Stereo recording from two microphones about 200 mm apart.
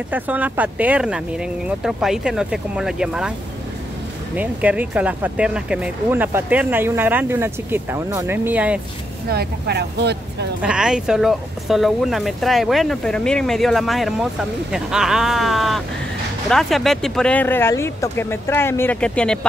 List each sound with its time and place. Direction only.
0.1 s speech: 10° right (ahead or behind)
4.4 s speech: 10° right (ahead or behind)
9.3 s speech: 55° right (ahead or behind)
10.6 s speech: 5° right (ahead or behind)